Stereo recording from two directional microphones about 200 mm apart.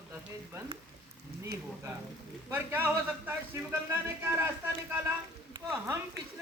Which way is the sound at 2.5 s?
10° right (ahead or behind).